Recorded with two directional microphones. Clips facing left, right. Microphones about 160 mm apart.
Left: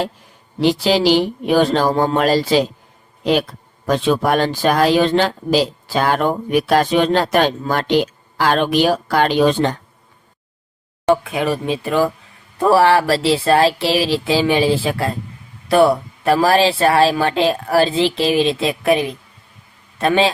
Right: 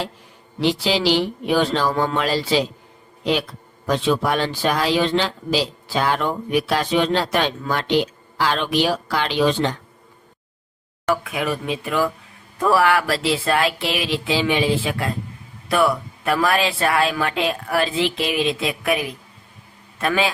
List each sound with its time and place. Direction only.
0.6 s speech: 45° left (ahead or behind)
3.8 s speech: 50° left (ahead or behind)
11.0 s a woman's voice: 25° left (ahead or behind)